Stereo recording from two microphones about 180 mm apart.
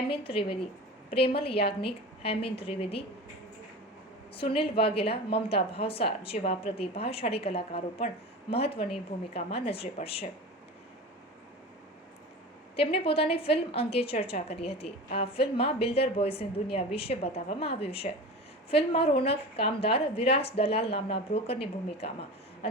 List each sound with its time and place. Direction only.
0.1 s a woman's voice: 30° left (ahead or behind)
4.4 s a woman's voice: 30° left (ahead or behind)
12.7 s a woman's voice: 30° left (ahead or behind)